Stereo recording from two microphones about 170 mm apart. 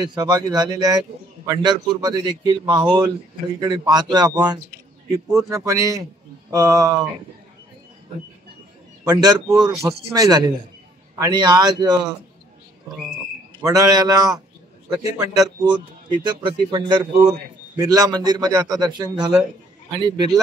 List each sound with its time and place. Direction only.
0.0 s a man's voice: 25° right (ahead or behind)
9.0 s a man's voice: 25° right (ahead or behind)
13.6 s a man's voice: 20° right (ahead or behind)